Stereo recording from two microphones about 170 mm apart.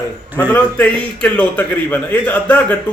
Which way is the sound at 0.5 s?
10° left (ahead or behind).